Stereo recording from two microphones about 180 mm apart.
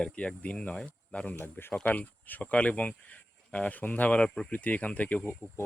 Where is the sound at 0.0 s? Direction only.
5° left (ahead or behind).